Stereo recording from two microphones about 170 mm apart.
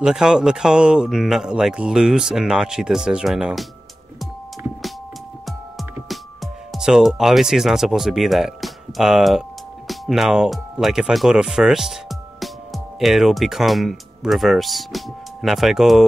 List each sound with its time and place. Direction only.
0.0 s speech: 5° right (ahead or behind)
5.8 s speech: centre (ahead or behind)